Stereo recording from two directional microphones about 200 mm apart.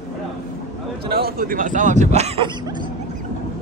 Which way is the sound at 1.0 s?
50° right (ahead or behind).